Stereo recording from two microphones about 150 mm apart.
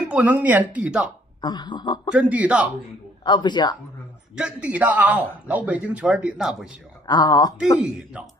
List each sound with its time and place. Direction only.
0.1 s speech: 10° right (ahead or behind)
1.4 s speech: 30° left (ahead or behind)
2.1 s speech: 10° right (ahead or behind)
3.3 s speech: 30° left (ahead or behind)
4.4 s speech: 5° right (ahead or behind)
7.1 s speech: 25° left (ahead or behind)
7.8 s speech: 5° right (ahead or behind)